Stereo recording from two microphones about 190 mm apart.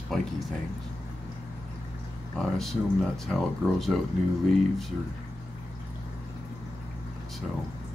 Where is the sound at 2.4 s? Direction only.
Centre (ahead or behind).